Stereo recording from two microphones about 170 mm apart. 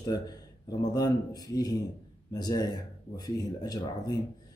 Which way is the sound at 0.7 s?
25° left (ahead or behind).